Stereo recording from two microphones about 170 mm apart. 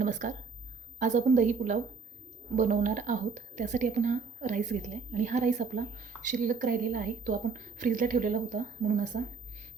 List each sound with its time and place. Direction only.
0.0 s a woman's voice: 45° right (ahead or behind)